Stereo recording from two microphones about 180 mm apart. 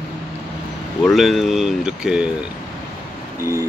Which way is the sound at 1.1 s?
Centre (ahead or behind).